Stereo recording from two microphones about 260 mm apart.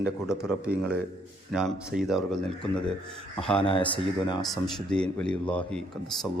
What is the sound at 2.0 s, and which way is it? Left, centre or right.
Speech, centre.